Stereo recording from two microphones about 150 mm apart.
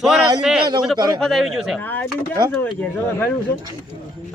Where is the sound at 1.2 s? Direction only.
Centre (ahead or behind).